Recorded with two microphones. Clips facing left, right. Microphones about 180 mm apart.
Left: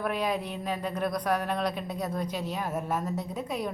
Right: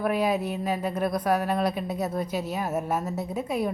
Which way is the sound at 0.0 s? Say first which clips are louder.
Right 5 dB; 5° right (ahead or behind).